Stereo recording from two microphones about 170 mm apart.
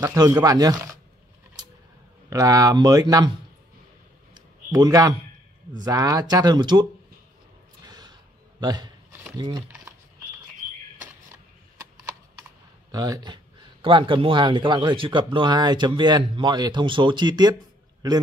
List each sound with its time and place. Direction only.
0.0 s speech: 20° right (ahead or behind)
2.2 s speech: 20° right (ahead or behind)
4.3 s a sound: 20° right (ahead or behind)
5.9 s speech: 20° right (ahead or behind)
7.8 s a sound: 25° right (ahead or behind)
9.4 s speech: 25° right (ahead or behind)
12.9 s speech: 20° right (ahead or behind)